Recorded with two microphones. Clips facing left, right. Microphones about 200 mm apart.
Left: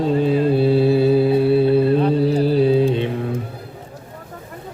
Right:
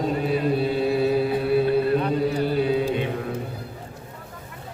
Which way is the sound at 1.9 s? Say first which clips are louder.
Left 6 dB; 30° left (ahead or behind).